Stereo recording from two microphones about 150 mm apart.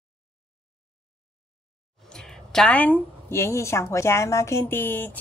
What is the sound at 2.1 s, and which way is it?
Speech, 5° left (ahead or behind).